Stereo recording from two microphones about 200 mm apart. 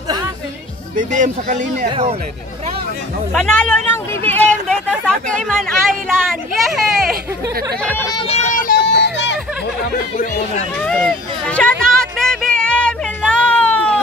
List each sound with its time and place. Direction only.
0.9 s speech: 40° right (ahead or behind)
1.9 s speech: 25° right (ahead or behind)
3.3 s speech: 5° left (ahead or behind)
8.2 s vehicle: 30° left (ahead or behind); by 9.4 s 60° left (ahead or behind)
10.8 s a sound: 5° left (ahead or behind)